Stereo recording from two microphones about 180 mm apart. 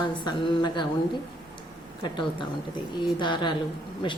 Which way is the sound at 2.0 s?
25° left (ahead or behind).